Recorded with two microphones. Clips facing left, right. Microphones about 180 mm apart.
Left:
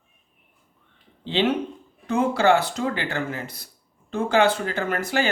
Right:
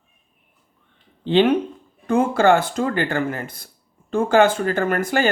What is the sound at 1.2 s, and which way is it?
Speech, 55° right (ahead or behind).